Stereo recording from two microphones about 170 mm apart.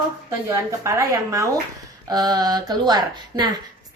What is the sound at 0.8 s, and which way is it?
A woman's voice, 20° right (ahead or behind).